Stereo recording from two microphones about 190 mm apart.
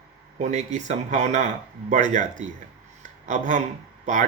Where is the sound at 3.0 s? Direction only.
40° right (ahead or behind).